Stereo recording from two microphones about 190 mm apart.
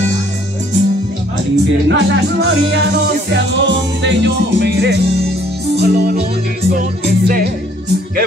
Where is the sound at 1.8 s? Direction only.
65° right (ahead or behind).